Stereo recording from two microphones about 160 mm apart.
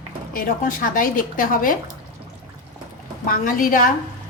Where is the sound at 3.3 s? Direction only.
60° left (ahead or behind).